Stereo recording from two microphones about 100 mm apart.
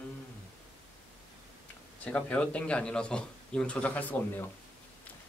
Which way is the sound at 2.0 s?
15° left (ahead or behind).